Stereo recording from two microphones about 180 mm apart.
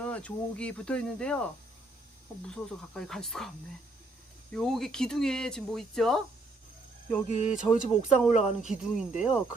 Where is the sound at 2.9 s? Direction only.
5° left (ahead or behind).